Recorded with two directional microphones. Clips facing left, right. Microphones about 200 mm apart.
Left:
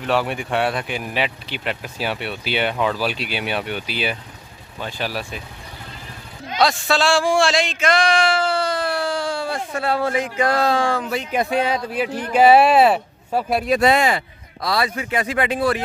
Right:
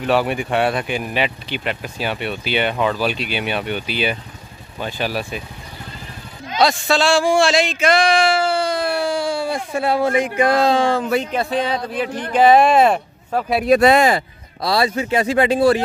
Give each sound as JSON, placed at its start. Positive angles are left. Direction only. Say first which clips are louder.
{"t": 0.0, "sound": "speech", "louder": "right 3 dB", "side_deg": -5}
{"t": 6.6, "sound": "speech", "louder": "right 2 dB", "side_deg": 0}
{"t": 11.3, "sound": "speech", "louder": "even", "side_deg": 10}
{"t": 13.7, "sound": "speech", "louder": "right 5 dB", "side_deg": -55}